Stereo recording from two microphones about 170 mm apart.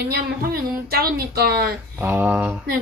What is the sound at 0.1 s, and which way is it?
Speech, 65° right (ahead or behind).